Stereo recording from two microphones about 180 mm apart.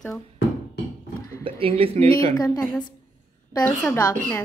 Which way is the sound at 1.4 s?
30° right (ahead or behind).